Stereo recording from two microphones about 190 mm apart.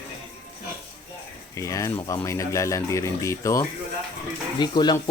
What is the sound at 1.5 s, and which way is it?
Speech, 15° left (ahead or behind).